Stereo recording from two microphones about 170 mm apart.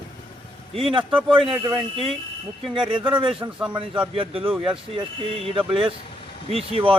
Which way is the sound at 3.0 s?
30° right (ahead or behind).